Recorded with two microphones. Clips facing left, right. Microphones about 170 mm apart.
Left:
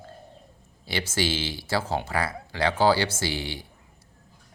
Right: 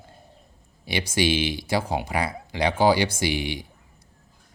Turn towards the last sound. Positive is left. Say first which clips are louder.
# right 4 dB
turn(degrees=-15)  # may be behind; listen again after turning